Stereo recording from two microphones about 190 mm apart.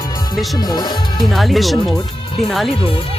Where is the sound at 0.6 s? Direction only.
20° left (ahead or behind).